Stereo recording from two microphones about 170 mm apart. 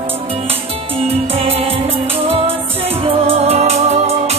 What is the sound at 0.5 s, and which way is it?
Music, 35° right (ahead or behind).